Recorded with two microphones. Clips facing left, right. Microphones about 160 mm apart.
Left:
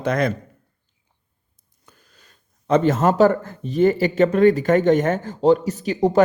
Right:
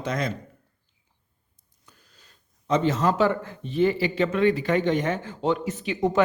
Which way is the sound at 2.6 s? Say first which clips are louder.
Left 5 dB; 55° left (ahead or behind).